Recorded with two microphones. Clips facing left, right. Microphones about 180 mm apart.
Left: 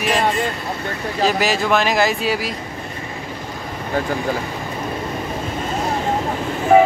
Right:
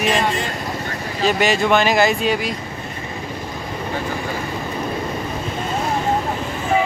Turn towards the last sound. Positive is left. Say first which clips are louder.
# left 7 dB
turn(degrees=55)  # may be behind; listen again after turning